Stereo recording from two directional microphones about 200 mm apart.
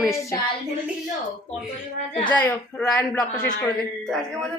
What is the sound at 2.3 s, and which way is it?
Speech, 5° left (ahead or behind).